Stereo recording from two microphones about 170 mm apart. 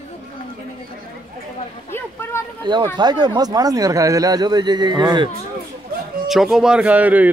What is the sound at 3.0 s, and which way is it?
Speech, 25° right (ahead or behind).